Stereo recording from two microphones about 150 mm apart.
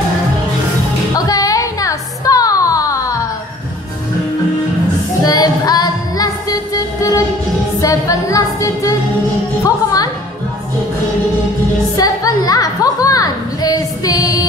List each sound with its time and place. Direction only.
1.1 s music: 25° left (ahead or behind)
5.2 s music: 25° left (ahead or behind)
12.0 s music: 25° left (ahead or behind)